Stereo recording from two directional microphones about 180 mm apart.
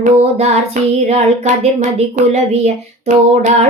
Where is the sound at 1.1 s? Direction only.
35° right (ahead or behind).